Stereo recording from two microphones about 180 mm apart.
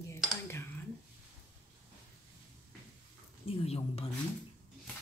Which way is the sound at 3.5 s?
35° left (ahead or behind).